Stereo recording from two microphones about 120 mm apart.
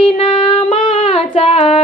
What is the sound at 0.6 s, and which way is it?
Child singing, 50° left (ahead or behind).